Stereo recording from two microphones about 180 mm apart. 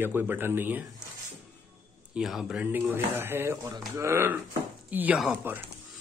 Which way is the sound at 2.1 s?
5° right (ahead or behind).